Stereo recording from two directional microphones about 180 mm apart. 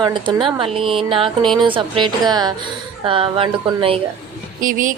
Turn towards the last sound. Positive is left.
turn(degrees=-50)  # may be behind; listen again after turning